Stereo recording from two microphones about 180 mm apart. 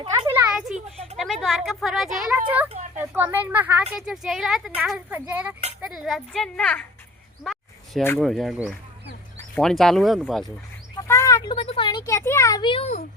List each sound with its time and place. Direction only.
0.0 s speech: 30° right (ahead or behind)
0.3 s a sound: 5° right (ahead or behind)
1.1 s speech: centre (ahead or behind)
3.0 s a woman's voice: 10° right (ahead or behind); by 6.8 s 5° left (ahead or behind)
7.9 s speech: 10° left (ahead or behind)
8.2 s speech: centre (ahead or behind)
10.9 s speech: 20° left (ahead or behind)